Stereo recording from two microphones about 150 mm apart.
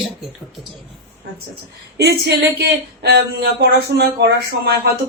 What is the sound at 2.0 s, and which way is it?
Speech, 90° right.